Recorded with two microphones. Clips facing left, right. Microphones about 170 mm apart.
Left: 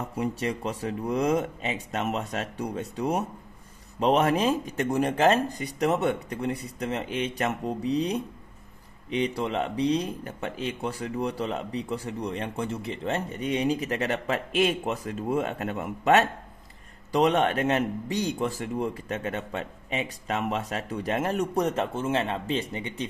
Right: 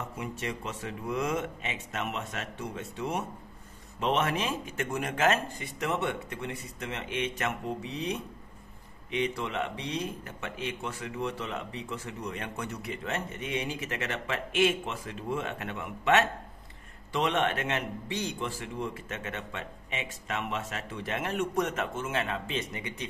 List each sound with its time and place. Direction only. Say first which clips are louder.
0.2 s speech: left 9 dB; 35° left (ahead or behind)